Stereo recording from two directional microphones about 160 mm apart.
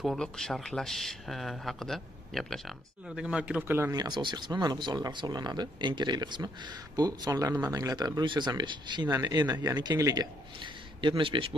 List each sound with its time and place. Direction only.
0.0 s speech: centre (ahead or behind); by 11.5 s 35° right (ahead or behind)